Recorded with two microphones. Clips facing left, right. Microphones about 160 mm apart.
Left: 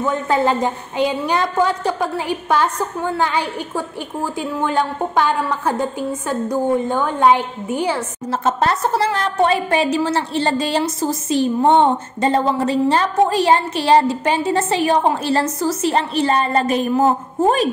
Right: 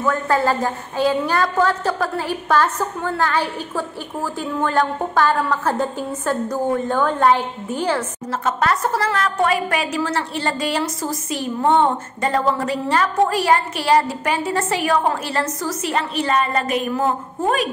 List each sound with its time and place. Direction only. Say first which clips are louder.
0.0 s a woman's voice: left 1 dB; 20° left (ahead or behind)
8.3 s a woman's voice: left 2 dB; 30° left (ahead or behind)